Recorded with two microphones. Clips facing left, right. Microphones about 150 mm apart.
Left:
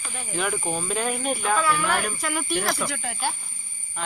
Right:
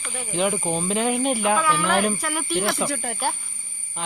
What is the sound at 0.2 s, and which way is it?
Speech, 15° right (ahead or behind).